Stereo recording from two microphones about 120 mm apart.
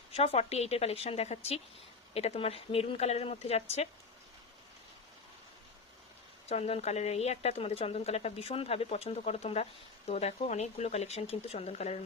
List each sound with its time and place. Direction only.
0.1 s speech: 60° left (ahead or behind)
6.5 s speech: 60° left (ahead or behind)